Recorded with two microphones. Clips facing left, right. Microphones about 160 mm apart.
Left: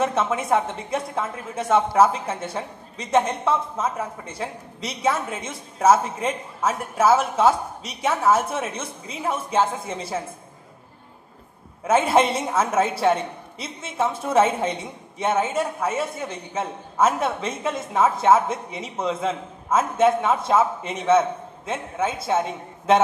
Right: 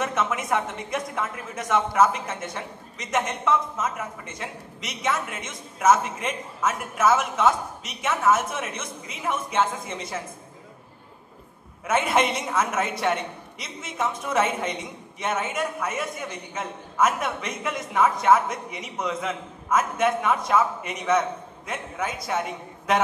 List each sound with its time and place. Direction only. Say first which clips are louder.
0.0 s a woman's voice: left 4 dB; 30° left (ahead or behind)
11.8 s a woman's voice: left 4 dB; 30° left (ahead or behind)